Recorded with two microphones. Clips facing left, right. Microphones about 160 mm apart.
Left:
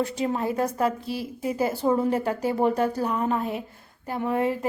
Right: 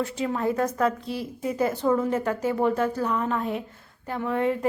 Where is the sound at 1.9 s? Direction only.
30° left (ahead or behind).